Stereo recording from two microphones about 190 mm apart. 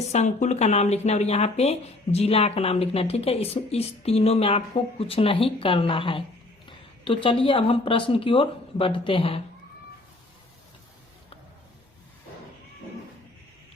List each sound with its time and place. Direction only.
0.1 s a woman's voice: 40° left (ahead or behind)